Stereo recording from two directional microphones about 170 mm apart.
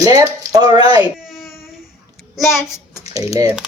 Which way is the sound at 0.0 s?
20° right (ahead or behind).